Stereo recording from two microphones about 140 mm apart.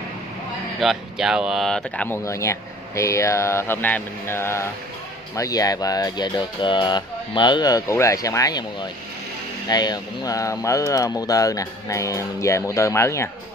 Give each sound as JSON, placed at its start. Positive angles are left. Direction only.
{"t": 0.7, "sound": "speech", "side_deg": 0}
{"t": 2.0, "sound": "speech", "side_deg": 20}
{"t": 9.7, "sound": "speech", "side_deg": 30}